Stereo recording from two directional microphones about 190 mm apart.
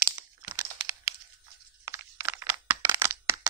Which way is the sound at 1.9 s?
10° right (ahead or behind).